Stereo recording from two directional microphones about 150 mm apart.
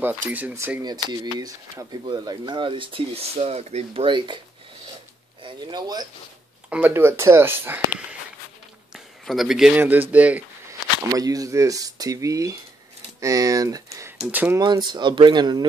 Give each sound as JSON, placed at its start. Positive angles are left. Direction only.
{"t": 0.3, "sound": "speech", "side_deg": -10}
{"t": 0.8, "sound": "speech", "side_deg": -25}
{"t": 5.4, "sound": "speech", "side_deg": -25}
{"t": 6.7, "sound": "speech", "side_deg": -10}
{"t": 8.9, "sound": "a man's voice", "side_deg": 0}
{"t": 10.7, "sound": "speech", "side_deg": -25}
{"t": 14.6, "sound": "speech", "side_deg": -30}